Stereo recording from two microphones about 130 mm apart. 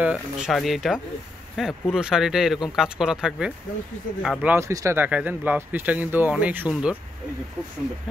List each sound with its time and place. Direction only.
0.0 s speech: 5° right (ahead or behind)
4.6 s speech: 20° right (ahead or behind)